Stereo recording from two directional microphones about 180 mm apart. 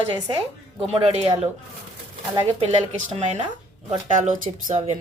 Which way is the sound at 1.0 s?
35° right (ahead or behind).